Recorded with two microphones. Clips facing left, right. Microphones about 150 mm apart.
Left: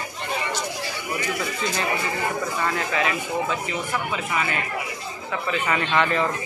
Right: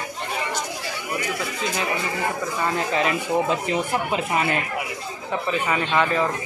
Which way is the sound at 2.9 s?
35° right (ahead or behind).